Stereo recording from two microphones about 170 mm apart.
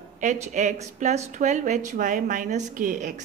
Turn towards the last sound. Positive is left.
turn(degrees=-50)  # may be behind; listen again after turning